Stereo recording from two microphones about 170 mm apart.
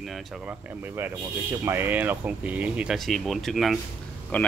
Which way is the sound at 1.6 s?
15° right (ahead or behind).